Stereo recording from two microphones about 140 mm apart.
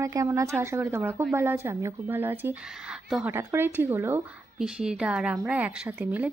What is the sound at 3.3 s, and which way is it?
Speech, 15° right (ahead or behind).